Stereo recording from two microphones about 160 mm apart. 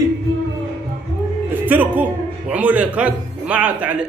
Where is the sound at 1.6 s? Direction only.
10° right (ahead or behind).